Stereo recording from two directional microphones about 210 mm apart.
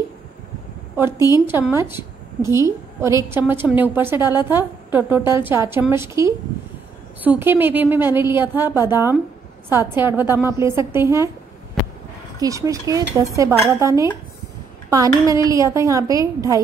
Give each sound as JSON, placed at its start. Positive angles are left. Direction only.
{"t": 1.1, "sound": "a woman's voice", "side_deg": 20}
{"t": 1.5, "sound": "a woman's voice", "side_deg": -10}
{"t": 12.4, "sound": "a woman's voice", "side_deg": -15}